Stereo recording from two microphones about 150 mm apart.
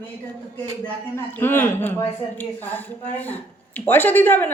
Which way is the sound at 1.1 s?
15° left (ahead or behind).